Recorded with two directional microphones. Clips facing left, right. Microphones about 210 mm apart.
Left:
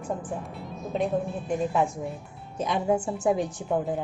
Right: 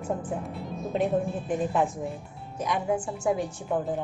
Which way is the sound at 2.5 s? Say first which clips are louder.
Left 2 dB; 25° left (ahead or behind).